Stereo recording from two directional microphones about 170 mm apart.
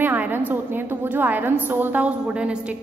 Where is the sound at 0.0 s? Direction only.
10° right (ahead or behind).